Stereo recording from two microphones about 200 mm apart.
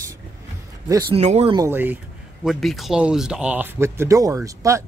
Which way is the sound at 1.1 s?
30° right (ahead or behind).